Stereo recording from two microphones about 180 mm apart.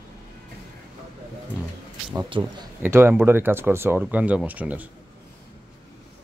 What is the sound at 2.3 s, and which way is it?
Speech, 25° right (ahead or behind).